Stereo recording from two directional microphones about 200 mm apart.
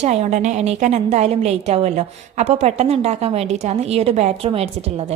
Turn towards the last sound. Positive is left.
turn(degrees=-30)  # may be behind; listen again after turning